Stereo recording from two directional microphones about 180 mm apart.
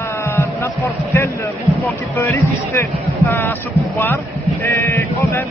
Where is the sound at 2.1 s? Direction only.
15° left (ahead or behind).